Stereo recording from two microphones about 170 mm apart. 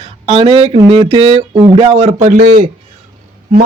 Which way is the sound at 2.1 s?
50° right (ahead or behind).